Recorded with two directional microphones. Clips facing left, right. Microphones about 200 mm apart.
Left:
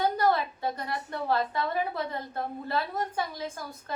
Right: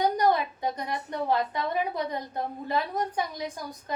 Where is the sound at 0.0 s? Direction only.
15° right (ahead or behind).